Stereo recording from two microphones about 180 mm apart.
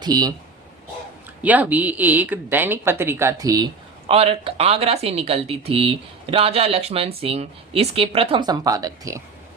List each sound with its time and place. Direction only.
0.0 s a man's voice: 20° right (ahead or behind)
1.4 s speech: 10° right (ahead or behind)
4.1 s speech: 35° right (ahead or behind)